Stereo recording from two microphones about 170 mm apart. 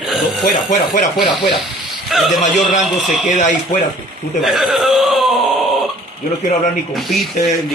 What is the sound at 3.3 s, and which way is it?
Speech, 45° left (ahead or behind).